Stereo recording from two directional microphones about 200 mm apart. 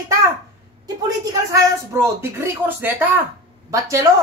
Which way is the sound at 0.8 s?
20° right (ahead or behind).